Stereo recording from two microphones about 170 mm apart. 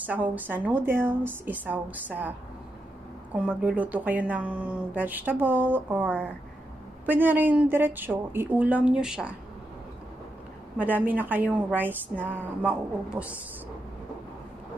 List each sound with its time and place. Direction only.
0.0 s speech: 10° right (ahead or behind)
3.3 s speech: 5° right (ahead or behind)
10.8 s speech: 10° right (ahead or behind)